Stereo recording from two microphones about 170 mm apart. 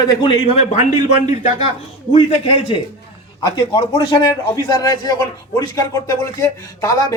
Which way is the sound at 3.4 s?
25° left (ahead or behind).